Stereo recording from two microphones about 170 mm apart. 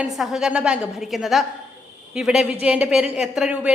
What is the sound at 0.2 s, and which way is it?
A woman's voice, centre (ahead or behind).